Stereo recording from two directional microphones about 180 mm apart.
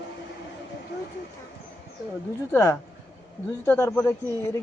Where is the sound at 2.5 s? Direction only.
15° left (ahead or behind).